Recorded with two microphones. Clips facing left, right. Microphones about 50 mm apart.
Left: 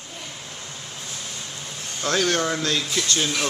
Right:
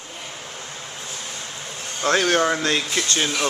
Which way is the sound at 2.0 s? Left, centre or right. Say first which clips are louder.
Right 4 dB; right.